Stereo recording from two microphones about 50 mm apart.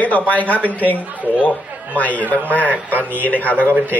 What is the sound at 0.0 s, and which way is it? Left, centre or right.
Speech, left.